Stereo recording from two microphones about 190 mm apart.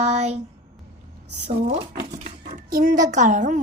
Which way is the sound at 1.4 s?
35° right (ahead or behind).